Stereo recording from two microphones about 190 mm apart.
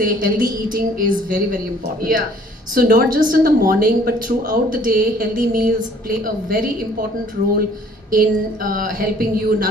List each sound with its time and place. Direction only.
0.0 s a woman's voice: 45° right (ahead or behind)
8.1 s a woman's voice: 50° right (ahead or behind)